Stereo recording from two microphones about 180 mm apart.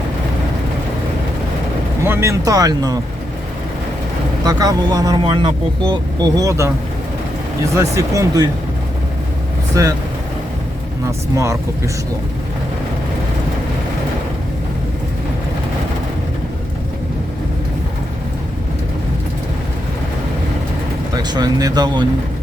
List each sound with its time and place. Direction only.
2.0 s speech: 15° right (ahead or behind)
4.4 s speech: 20° right (ahead or behind)
7.8 s speech: 15° right (ahead or behind)
9.7 s speech: 20° right (ahead or behind)
21.2 s speech: 20° right (ahead or behind)